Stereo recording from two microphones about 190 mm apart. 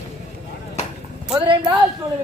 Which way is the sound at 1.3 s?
25° right (ahead or behind).